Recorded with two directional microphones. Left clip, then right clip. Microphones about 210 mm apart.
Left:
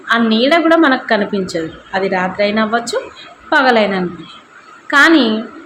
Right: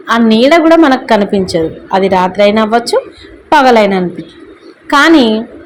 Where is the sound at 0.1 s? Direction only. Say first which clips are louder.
Right 5 dB; 30° right (ahead or behind).